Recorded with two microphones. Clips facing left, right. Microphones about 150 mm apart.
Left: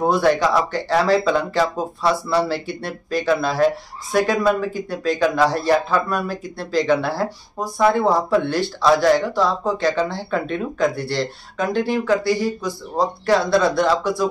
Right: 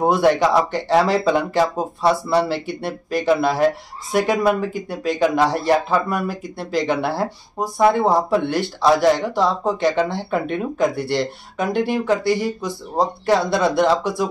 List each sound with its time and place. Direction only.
0.0 s speech: 20° right (ahead or behind)